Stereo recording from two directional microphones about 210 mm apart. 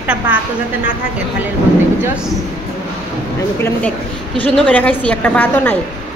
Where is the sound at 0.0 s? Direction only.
5° right (ahead or behind).